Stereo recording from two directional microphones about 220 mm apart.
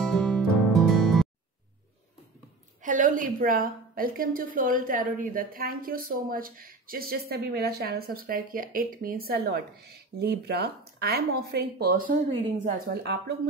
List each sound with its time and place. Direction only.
0.0 s music: centre (ahead or behind)
2.8 s a woman's voice: 35° right (ahead or behind)